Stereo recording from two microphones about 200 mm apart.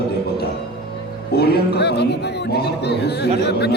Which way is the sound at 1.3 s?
50° left (ahead or behind).